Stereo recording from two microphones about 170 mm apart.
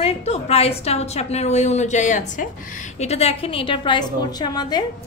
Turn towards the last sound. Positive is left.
turn(degrees=25)  # may be behind; listen again after turning